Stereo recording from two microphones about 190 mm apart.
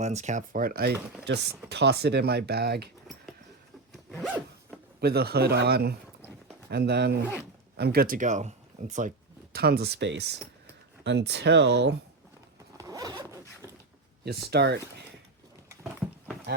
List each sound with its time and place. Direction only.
0.0 s speech: 35° right (ahead or behind); by 2.9 s 60° right (ahead or behind)
4.9 s speech: 55° right (ahead or behind)
12.7 s zipper: 20° right (ahead or behind)
14.3 s speech: 55° right (ahead or behind)
15.7 s a sound: 15° right (ahead or behind)